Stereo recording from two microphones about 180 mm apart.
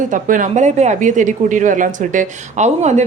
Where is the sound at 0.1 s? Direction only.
45° right (ahead or behind).